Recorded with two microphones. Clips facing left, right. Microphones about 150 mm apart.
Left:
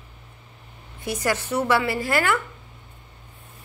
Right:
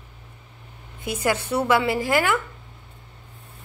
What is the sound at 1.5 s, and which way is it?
Speech, 10° right (ahead or behind).